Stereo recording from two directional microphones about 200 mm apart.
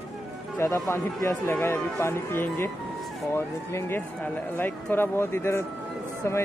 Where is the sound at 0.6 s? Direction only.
15° left (ahead or behind).